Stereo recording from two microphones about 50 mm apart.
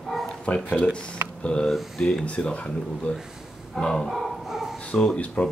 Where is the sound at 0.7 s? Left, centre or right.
Centre.